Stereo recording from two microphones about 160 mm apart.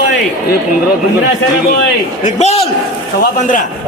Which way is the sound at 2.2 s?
45° left (ahead or behind).